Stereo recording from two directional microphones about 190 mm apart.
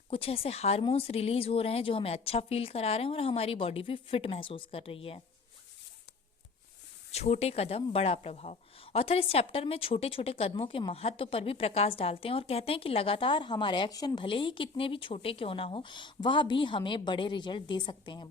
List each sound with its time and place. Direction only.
0.1 s a woman's voice: 30° left (ahead or behind)
7.1 s speech: 35° left (ahead or behind)